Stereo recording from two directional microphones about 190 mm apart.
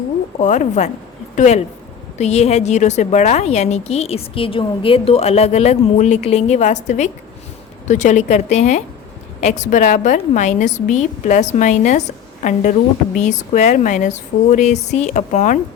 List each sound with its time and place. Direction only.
0.3 s a woman's voice: 40° left (ahead or behind)